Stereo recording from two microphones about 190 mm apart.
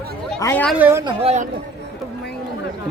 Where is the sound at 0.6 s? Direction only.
10° right (ahead or behind).